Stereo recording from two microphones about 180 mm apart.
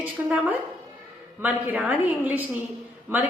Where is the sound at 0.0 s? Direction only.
10° right (ahead or behind).